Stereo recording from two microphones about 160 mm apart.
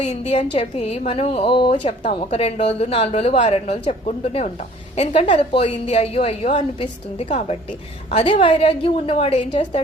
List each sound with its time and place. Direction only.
0.0 s a woman's voice: 45° left (ahead or behind)
0.3 s a woman's voice: 35° left (ahead or behind)